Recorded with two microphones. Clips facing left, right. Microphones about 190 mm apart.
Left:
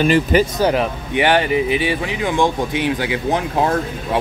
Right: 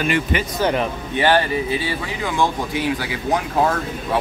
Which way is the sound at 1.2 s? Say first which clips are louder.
Left 2 dB; 15° left (ahead or behind).